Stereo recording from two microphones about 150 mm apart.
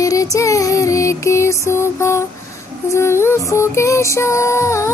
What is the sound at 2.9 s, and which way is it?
Music, 20° left (ahead or behind).